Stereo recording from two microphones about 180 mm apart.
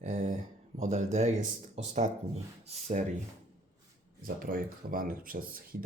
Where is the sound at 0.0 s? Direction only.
45° right (ahead or behind).